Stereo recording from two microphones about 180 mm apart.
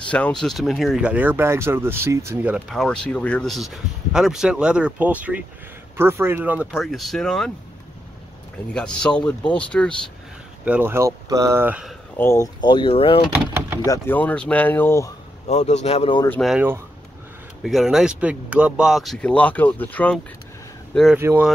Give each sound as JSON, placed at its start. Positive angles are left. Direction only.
{"t": 0.1, "sound": "speech", "side_deg": 5}
{"t": 8.7, "sound": "speech", "side_deg": 5}
{"t": 10.6, "sound": "speech", "side_deg": -10}
{"t": 12.2, "sound": "speech", "side_deg": 15}
{"t": 12.5, "sound": "speech", "side_deg": 25}
{"t": 13.3, "sound": "door", "side_deg": -10}
{"t": 13.8, "sound": "speech", "side_deg": 15}
{"t": 15.4, "sound": "speech", "side_deg": 40}
{"t": 16.3, "sound": "speech", "side_deg": 0}
{"t": 17.6, "sound": "speech", "side_deg": 0}
{"t": 21.2, "sound": "speech", "side_deg": -15}